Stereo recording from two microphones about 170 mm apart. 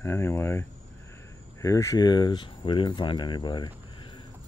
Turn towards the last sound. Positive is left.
turn(degrees=25)  # may be behind; listen again after turning